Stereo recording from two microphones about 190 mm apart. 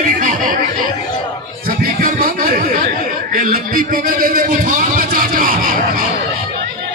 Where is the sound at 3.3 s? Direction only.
50° right (ahead or behind).